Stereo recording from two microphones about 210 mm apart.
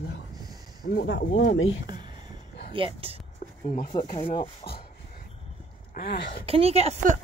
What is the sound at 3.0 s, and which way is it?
Speech, 25° right (ahead or behind).